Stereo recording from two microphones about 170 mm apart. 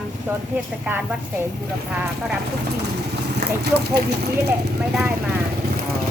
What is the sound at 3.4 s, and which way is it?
Speech, 75° right (ahead or behind).